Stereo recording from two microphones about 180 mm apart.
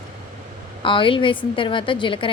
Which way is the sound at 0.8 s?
30° left (ahead or behind).